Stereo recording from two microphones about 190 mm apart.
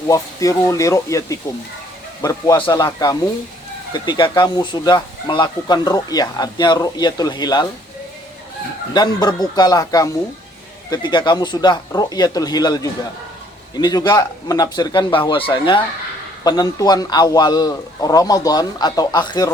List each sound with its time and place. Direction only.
0.1 s speech: 15° left (ahead or behind)
8.9 s speech: 20° left (ahead or behind)